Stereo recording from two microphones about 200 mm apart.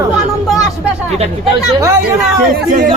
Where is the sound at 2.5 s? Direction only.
45° right (ahead or behind).